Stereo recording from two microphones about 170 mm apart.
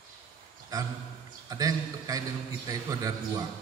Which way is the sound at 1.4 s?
20° right (ahead or behind).